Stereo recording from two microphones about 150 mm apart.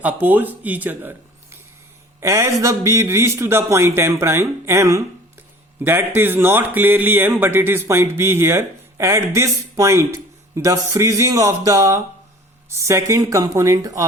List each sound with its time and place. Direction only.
0.0 s speech: 10° right (ahead or behind)
2.2 s speech: 20° right (ahead or behind)